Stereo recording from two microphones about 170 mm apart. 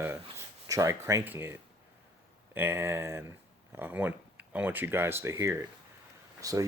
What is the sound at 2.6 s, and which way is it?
Speech, 15° right (ahead or behind).